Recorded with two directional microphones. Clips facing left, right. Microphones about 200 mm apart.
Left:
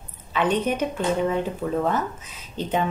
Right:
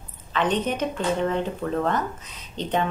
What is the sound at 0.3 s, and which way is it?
Speech, 10° left (ahead or behind).